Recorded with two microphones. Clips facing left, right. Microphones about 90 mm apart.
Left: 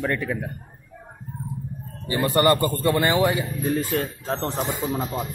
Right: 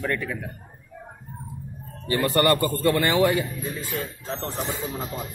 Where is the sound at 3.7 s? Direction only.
45° left (ahead or behind).